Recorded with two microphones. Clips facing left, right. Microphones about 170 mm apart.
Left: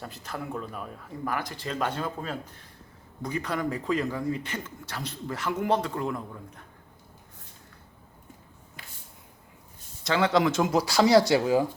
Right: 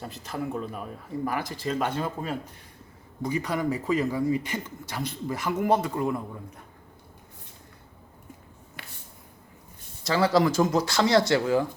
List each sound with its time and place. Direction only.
0.0 s speech: 5° right (ahead or behind)
8.8 s a sound: 70° right (ahead or behind)
10.0 s speech: centre (ahead or behind); by 11.6 s 15° left (ahead or behind)